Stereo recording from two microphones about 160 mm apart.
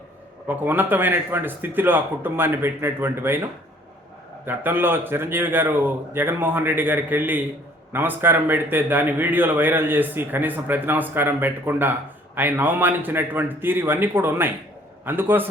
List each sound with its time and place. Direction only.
0.4 s a man's voice: 10° right (ahead or behind)
4.4 s a man's voice: 10° right (ahead or behind)